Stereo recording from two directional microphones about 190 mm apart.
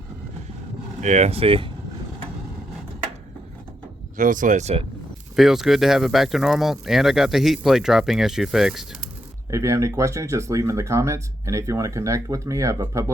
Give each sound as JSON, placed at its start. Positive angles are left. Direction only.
{"t": 1.0, "sound": "speech", "side_deg": -35}
{"t": 4.2, "sound": "speech", "side_deg": -45}
{"t": 5.4, "sound": "speech", "side_deg": 0}
{"t": 9.5, "sound": "speech", "side_deg": -15}